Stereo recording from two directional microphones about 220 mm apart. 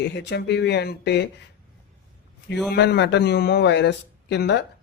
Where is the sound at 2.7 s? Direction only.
50° left (ahead or behind).